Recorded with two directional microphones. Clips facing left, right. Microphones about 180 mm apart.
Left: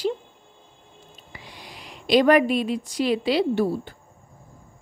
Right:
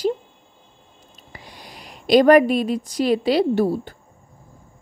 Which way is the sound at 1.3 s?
45° right (ahead or behind).